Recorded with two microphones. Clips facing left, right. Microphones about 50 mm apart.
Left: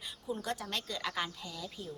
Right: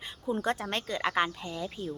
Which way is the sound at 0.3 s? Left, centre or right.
Right.